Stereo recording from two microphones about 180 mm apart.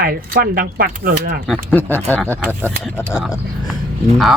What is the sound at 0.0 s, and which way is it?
Speech, 60° right (ahead or behind).